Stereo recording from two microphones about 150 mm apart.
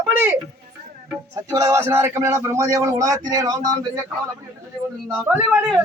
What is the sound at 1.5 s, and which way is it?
Speech, 20° right (ahead or behind).